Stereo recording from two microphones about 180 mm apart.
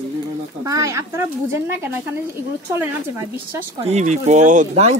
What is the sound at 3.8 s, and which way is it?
Speech, 40° right (ahead or behind).